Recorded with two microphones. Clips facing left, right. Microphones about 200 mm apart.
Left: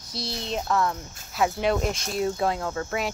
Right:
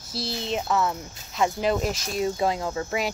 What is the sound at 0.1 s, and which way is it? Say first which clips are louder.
Speech: right 2 dB; centre (ahead or behind).